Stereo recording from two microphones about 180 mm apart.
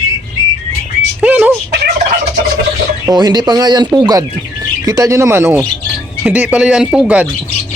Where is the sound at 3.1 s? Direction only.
20° right (ahead or behind); by 7.2 s 5° right (ahead or behind).